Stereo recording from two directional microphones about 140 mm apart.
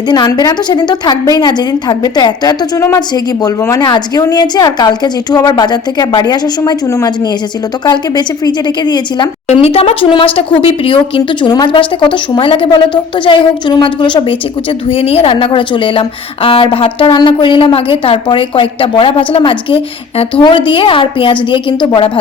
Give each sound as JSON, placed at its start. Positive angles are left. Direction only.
{"t": 0.1, "sound": "a woman's voice", "side_deg": 30}
{"t": 9.5, "sound": "speech", "side_deg": 45}